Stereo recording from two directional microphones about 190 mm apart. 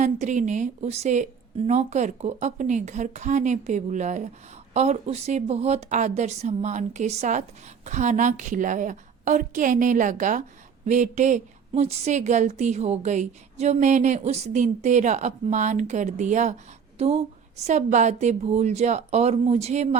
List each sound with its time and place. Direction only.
0.0 s a woman's voice: 40° right (ahead or behind)